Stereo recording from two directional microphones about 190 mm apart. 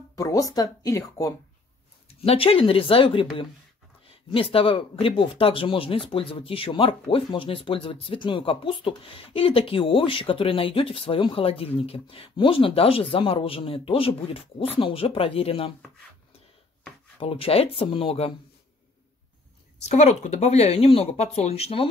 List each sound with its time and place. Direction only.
0.1 s speech: 15° left (ahead or behind)
2.2 s speech: 30° left (ahead or behind)
17.2 s speech: 30° left (ahead or behind)
19.8 s speech: 35° left (ahead or behind)